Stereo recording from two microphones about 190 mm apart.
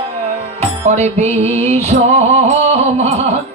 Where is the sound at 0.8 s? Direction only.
35° right (ahead or behind).